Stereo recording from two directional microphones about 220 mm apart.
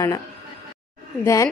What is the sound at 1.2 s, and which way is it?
Speech, 15° left (ahead or behind).